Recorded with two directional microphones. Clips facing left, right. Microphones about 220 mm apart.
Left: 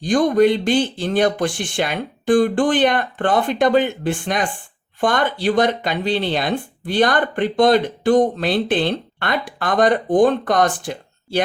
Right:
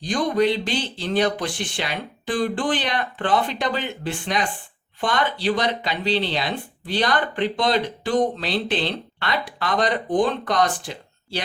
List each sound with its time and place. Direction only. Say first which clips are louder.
0.0 s speech: left 6 dB; 50° left (ahead or behind)